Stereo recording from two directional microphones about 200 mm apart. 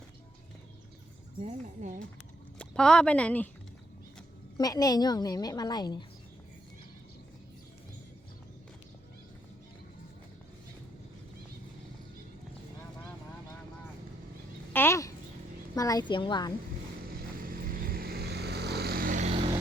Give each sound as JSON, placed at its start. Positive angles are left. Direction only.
{"t": 1.4, "sound": "speech", "side_deg": -35}
{"t": 2.6, "sound": "a woman's voice", "side_deg": 5}
{"t": 4.5, "sound": "a woman's voice", "side_deg": 20}
{"t": 14.7, "sound": "a sound", "side_deg": 10}
{"t": 15.7, "sound": "a woman's voice", "side_deg": 20}
{"t": 17.2, "sound": "vehicle", "side_deg": -45}